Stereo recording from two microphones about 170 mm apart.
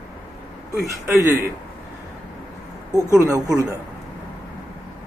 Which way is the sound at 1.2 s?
15° right (ahead or behind).